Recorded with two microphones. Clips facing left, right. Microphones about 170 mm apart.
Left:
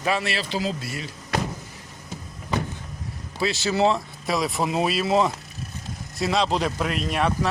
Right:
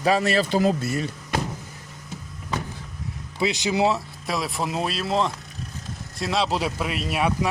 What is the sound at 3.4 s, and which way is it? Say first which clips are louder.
Speech: even; 15° right (ahead or behind).